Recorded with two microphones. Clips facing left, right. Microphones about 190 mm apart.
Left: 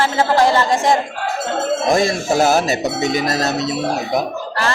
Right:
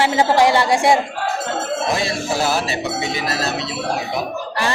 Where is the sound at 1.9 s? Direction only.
45° left (ahead or behind).